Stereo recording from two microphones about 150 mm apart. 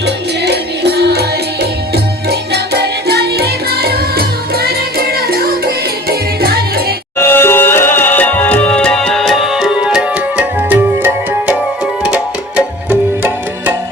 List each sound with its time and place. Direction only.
0.0 s music: 90° right
7.2 s music: 15° left (ahead or behind); by 13.7 s 10° right (ahead or behind)